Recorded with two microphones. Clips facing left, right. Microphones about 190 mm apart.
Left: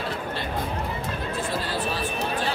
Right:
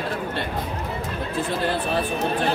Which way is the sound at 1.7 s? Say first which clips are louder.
Right 4 dB; 55° right (ahead or behind).